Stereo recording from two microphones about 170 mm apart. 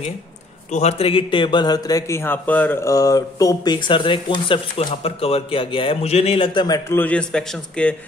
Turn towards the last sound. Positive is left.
turn(degrees=5)  # may be behind; listen again after turning